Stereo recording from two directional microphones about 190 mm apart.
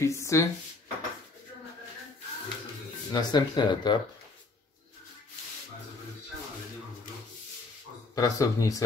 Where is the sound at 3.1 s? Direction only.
20° left (ahead or behind).